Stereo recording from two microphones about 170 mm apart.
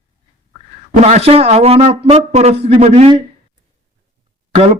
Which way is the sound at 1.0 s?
40° right (ahead or behind).